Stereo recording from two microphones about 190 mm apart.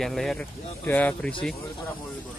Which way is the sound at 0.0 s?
Centre (ahead or behind).